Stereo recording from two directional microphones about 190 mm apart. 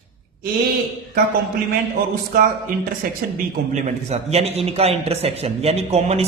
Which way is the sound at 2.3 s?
50° right (ahead or behind).